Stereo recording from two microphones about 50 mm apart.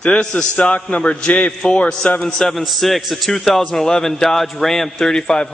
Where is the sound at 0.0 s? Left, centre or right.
Centre.